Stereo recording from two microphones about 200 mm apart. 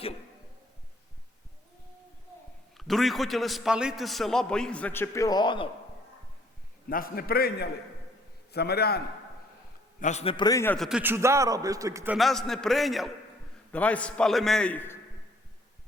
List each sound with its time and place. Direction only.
2.7 s a man's voice: centre (ahead or behind); by 5.6 s 20° left (ahead or behind)
6.9 s a man's voice: 45° left (ahead or behind)
10.0 s a man's voice: 35° left (ahead or behind); by 10.8 s 15° left (ahead or behind)
10.8 s a man's voice: 5° right (ahead or behind)
12.1 s a man's voice: centre (ahead or behind)